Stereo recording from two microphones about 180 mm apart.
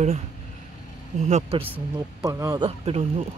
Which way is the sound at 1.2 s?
40° right (ahead or behind).